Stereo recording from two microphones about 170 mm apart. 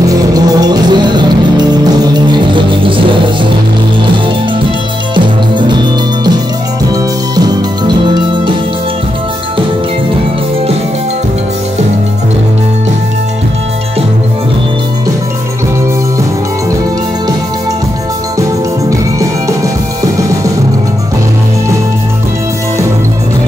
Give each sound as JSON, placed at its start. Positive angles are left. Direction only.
{"t": 0.1, "sound": "music", "side_deg": -20}
{"t": 5.1, "sound": "music", "side_deg": -30}
{"t": 18.9, "sound": "music", "side_deg": -20}